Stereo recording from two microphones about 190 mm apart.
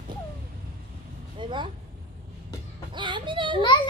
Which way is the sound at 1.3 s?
25° right (ahead or behind).